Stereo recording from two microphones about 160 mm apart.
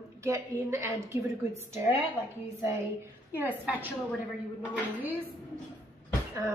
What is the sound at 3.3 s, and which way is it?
Speech, 10° right (ahead or behind).